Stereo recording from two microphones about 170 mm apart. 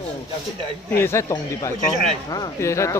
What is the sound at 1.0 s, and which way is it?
Speech, 15° left (ahead or behind).